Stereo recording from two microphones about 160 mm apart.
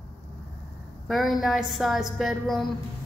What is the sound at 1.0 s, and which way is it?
A woman's voice, centre (ahead or behind).